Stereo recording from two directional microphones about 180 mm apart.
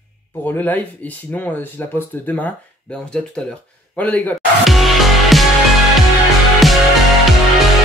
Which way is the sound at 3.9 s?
10° left (ahead or behind).